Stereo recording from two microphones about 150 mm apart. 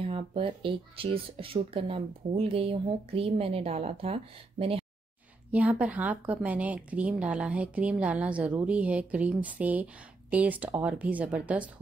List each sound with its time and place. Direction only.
0.0 s speech: 40° right (ahead or behind)
5.5 s speech: 10° right (ahead or behind)